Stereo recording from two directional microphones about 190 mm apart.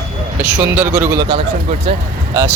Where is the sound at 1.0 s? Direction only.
20° right (ahead or behind).